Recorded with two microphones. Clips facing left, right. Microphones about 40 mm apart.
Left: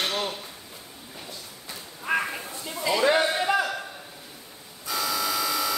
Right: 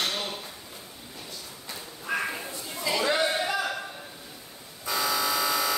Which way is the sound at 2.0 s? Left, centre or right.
Left.